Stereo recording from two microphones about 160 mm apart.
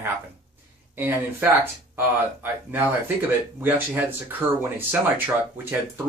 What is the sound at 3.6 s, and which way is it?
Speech, 15° right (ahead or behind).